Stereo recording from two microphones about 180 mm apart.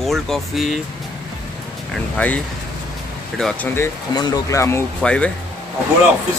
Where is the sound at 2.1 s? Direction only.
5° left (ahead or behind).